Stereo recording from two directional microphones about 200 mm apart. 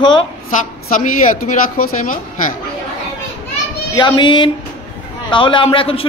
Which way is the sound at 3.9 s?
25° left (ahead or behind).